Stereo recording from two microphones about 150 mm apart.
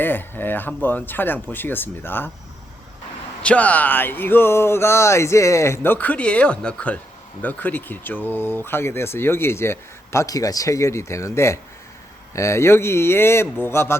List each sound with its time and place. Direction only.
0.0 s speech: 15° left (ahead or behind)
3.4 s speech: 10° left (ahead or behind)